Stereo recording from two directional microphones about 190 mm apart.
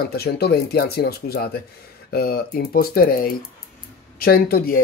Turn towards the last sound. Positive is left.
turn(degrees=55)  # may be behind; listen again after turning